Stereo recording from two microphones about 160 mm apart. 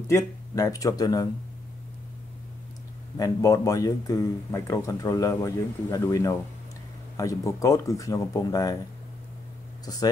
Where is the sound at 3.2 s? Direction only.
20° left (ahead or behind).